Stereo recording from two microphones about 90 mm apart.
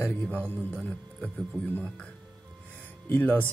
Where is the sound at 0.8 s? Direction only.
10° left (ahead or behind).